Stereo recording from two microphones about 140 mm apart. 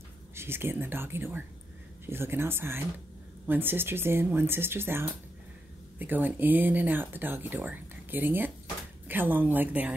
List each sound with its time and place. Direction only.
0.3 s speech: 15° right (ahead or behind)